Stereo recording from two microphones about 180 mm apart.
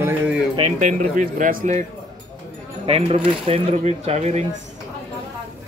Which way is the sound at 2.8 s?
35° right (ahead or behind).